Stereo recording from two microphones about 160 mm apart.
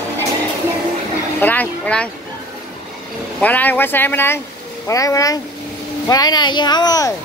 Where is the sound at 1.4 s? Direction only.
10° left (ahead or behind).